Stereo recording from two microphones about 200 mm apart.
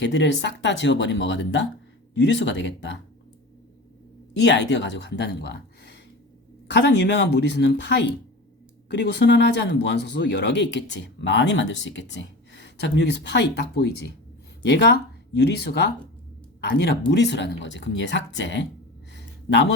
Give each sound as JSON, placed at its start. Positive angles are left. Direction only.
{"t": 0.0, "sound": "speech", "side_deg": 60}
{"t": 4.4, "sound": "speech", "side_deg": 60}
{"t": 19.1, "sound": "a sound", "side_deg": 60}